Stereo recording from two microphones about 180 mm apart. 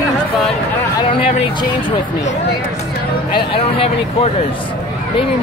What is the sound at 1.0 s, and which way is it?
Speech, 30° left (ahead or behind).